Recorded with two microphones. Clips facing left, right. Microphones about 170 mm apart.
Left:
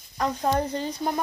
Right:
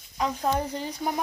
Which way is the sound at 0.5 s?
10° right (ahead or behind).